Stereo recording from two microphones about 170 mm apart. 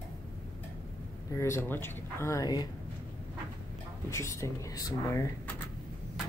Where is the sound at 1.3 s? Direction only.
15° left (ahead or behind).